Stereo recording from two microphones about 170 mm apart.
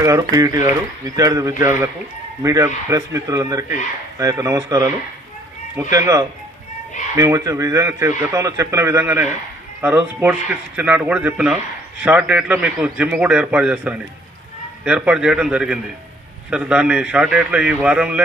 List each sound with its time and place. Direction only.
0.0 s a man's voice: 20° right (ahead or behind)